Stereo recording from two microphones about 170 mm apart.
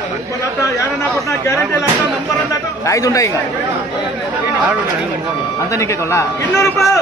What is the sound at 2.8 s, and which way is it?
Speech, 20° left (ahead or behind).